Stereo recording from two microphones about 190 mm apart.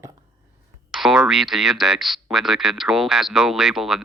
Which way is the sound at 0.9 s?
Centre (ahead or behind).